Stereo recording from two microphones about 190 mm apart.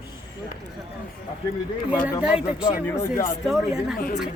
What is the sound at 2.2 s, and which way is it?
Speech, 5° right (ahead or behind).